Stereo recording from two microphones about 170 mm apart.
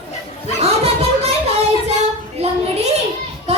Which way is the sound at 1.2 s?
35° right (ahead or behind).